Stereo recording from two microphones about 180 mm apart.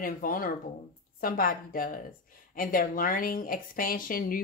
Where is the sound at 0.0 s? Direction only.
50° left (ahead or behind).